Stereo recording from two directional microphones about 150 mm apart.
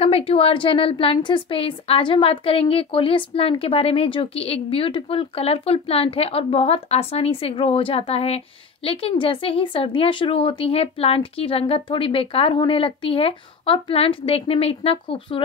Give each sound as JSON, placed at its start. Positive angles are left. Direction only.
{"t": 0.0, "sound": "a woman's voice", "side_deg": 40}